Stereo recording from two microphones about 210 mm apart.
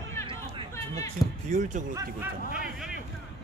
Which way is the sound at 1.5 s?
35° right (ahead or behind).